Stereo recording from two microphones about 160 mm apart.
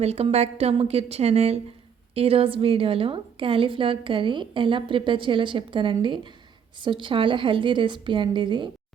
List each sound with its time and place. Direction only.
0.0 s a woman's voice: 40° right (ahead or behind)